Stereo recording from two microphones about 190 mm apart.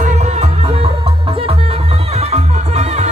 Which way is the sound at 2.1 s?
35° right (ahead or behind).